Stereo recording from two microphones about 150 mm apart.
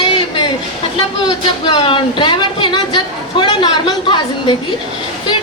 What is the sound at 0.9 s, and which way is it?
Speech, 30° left (ahead or behind).